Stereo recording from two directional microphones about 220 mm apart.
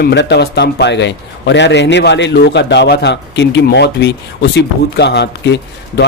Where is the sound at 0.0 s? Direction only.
50° left (ahead or behind).